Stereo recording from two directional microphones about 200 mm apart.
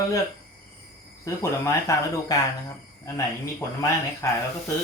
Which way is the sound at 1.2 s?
15° left (ahead or behind).